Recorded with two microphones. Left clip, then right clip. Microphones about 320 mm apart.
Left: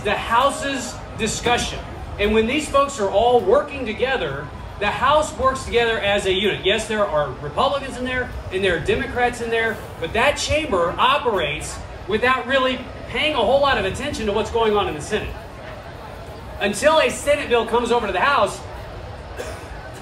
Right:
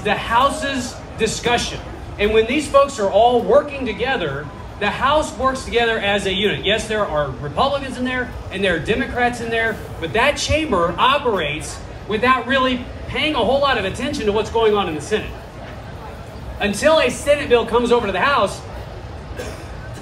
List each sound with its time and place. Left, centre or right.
0.0 s a man's voice: right
16.5 s a man's voice: right